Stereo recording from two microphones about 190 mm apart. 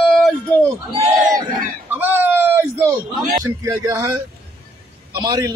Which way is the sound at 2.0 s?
10° right (ahead or behind).